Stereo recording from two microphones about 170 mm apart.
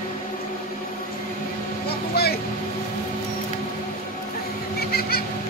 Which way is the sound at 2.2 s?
65° left (ahead or behind).